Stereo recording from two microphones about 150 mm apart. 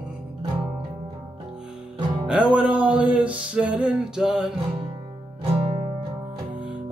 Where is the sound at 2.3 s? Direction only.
10° right (ahead or behind).